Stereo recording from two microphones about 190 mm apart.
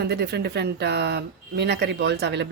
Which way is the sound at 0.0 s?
60° right (ahead or behind).